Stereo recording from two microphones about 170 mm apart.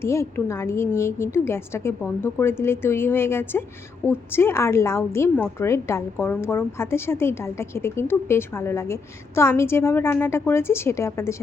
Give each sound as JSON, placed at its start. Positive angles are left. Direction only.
{"t": 0.0, "sound": "a woman's voice", "side_deg": 15}